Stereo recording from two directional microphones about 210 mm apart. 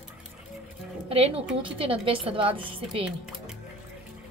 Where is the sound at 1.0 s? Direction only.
30° right (ahead or behind).